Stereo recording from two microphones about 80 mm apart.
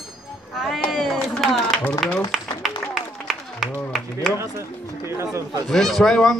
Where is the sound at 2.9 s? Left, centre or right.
Centre.